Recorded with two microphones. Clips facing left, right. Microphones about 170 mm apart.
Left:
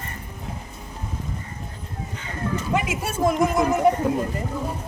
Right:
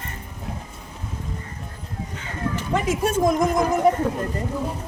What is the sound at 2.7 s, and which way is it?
Speech, 10° left (ahead or behind).